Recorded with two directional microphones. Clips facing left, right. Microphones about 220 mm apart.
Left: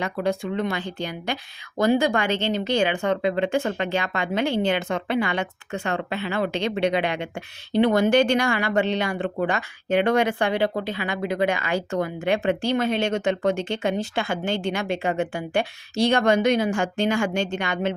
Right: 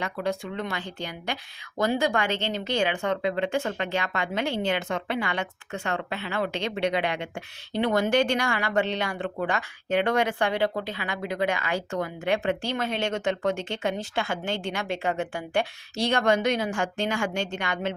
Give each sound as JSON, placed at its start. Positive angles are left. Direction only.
{"t": 0.0, "sound": "a woman's voice", "side_deg": 15}